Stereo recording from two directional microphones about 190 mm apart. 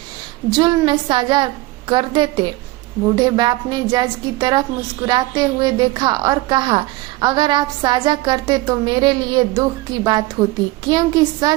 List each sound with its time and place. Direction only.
0.5 s a woman's voice: 20° right (ahead or behind)